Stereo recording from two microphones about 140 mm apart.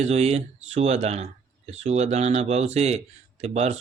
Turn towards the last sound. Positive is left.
turn(degrees=-50)  # may be behind; listen again after turning